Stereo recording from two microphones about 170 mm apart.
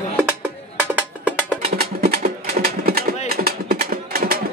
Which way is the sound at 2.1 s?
60° right (ahead or behind).